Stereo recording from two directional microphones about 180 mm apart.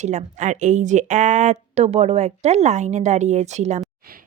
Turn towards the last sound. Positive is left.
turn(degrees=-40)  # may be behind; listen again after turning